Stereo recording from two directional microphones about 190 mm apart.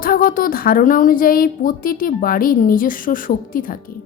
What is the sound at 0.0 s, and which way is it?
A woman's voice, 50° left (ahead or behind).